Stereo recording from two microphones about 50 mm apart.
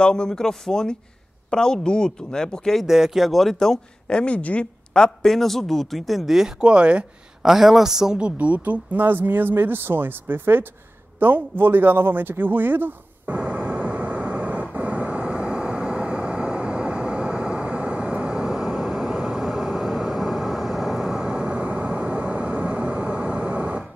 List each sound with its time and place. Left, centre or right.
0.0 s speech: centre
2.9 s speech: centre
4.1 s speech: left
4.9 s speech: centre
6.6 s speech: right
7.4 s a man's voice: centre
8.2 s speech: right
13.4 s vehicle: right